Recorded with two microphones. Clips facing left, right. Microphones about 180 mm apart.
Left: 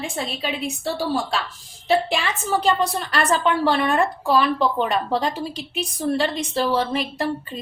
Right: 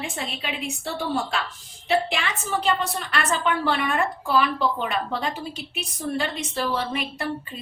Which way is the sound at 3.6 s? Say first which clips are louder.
Left 4 dB; 35° left (ahead or behind).